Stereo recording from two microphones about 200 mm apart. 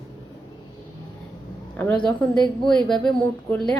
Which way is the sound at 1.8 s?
10° left (ahead or behind).